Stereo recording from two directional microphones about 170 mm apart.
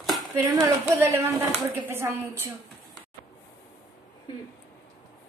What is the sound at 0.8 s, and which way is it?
A woman's voice, 15° right (ahead or behind).